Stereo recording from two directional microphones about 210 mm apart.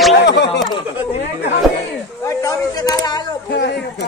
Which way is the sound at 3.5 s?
55° left (ahead or behind).